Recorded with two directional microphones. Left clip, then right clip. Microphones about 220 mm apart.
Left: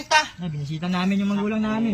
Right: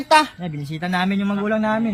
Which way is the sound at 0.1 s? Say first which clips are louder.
Right 5 dB; 25° right (ahead or behind).